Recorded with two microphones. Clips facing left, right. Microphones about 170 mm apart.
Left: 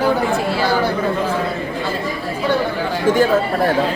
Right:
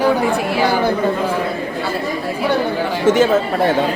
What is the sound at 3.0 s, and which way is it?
Speech, 20° right (ahead or behind).